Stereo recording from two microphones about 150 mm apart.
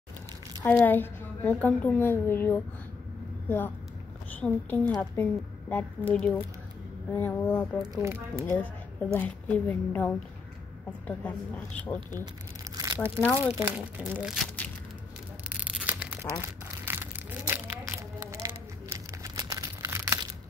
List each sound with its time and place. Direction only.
0.7 s a woman's voice: 10° left (ahead or behind)
7.8 s speech: 20° right (ahead or behind)
9.2 s a woman's voice: 10° left (ahead or behind)
12.7 s crumpling: 20° right (ahead or behind)
13.6 s speech: 15° right (ahead or behind)
14.2 s speech: centre (ahead or behind)
15.9 s a sound: 15° right (ahead or behind)